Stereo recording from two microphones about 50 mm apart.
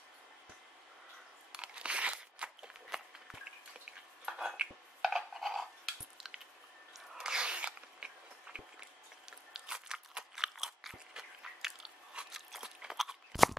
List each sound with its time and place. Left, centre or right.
1.5 s crunch: right
2.9 s walk: centre
4.3 s a sound: centre
7.2 s a sound: centre
8.5 s run: right
9.5 s crunch: centre